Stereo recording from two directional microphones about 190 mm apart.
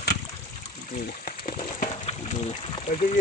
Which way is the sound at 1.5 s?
35° left (ahead or behind).